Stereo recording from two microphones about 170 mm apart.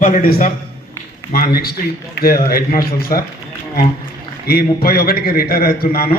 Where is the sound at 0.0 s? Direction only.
55° left (ahead or behind).